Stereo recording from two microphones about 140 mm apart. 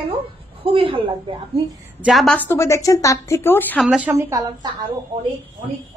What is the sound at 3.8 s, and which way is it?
Speech, 5° right (ahead or behind).